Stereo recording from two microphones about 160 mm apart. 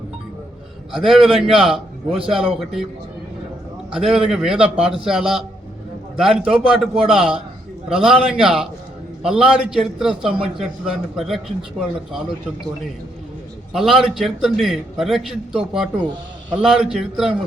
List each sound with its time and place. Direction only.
0.9 s a man's voice: 5° right (ahead or behind)
4.0 s a man's voice: 5° right (ahead or behind)
10.3 s a man's voice: 35° right (ahead or behind)
11.2 s a man's voice: centre (ahead or behind)
13.7 s a man's voice: centre (ahead or behind)